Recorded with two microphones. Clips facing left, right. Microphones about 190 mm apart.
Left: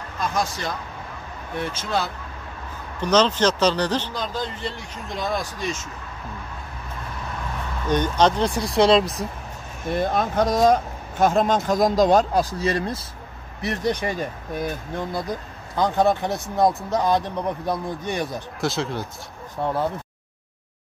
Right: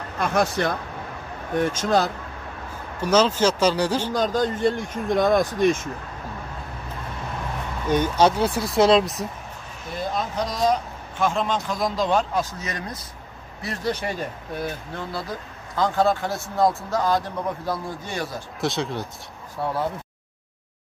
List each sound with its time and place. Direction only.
0.2 s speech: 60° right (ahead or behind)
1.5 s speech: 45° right (ahead or behind)
3.0 s speech: 10° right (ahead or behind)
4.1 s speech: 45° right (ahead or behind)
7.9 s speech: 10° right (ahead or behind)
9.8 s speech: 60° left (ahead or behind); by 18.4 s 20° left (ahead or behind)
18.6 s speech: centre (ahead or behind)
19.6 s speech: 20° left (ahead or behind)